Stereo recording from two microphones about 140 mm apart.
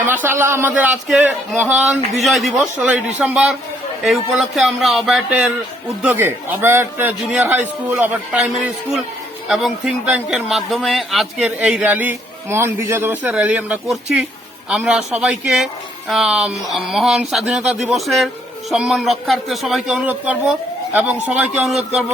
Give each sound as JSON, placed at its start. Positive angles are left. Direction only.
{"t": 0.1, "sound": "a man's voice", "side_deg": -15}
{"t": 1.0, "sound": "speech", "side_deg": -5}
{"t": 2.7, "sound": "a man's voice", "side_deg": -10}